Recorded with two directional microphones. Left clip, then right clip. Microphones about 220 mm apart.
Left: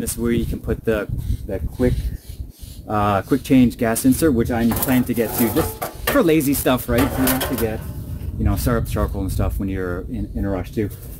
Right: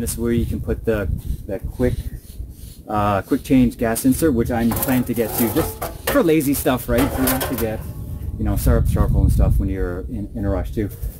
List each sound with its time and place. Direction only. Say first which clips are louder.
0.2 s speech: even; 15° left (ahead or behind)
5.5 s speech: even; 5° right (ahead or behind)
6.1 s speech: even; 10° left (ahead or behind)
7.0 s speech: even; 5° right (ahead or behind)
8.5 s speech: even; 10° left (ahead or behind)
10.4 s speech: right 1 dB; 5° left (ahead or behind)